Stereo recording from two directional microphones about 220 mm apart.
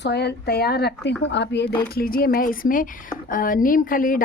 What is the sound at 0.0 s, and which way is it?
A woman's voice, 50° left (ahead or behind).